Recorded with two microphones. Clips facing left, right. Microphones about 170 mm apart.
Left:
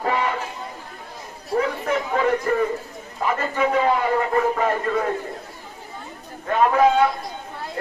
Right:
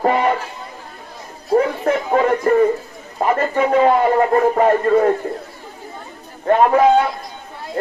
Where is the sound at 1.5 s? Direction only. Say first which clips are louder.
Right 6 dB; 45° right (ahead or behind).